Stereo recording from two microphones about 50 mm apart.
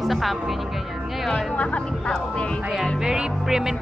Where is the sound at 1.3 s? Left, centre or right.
Left.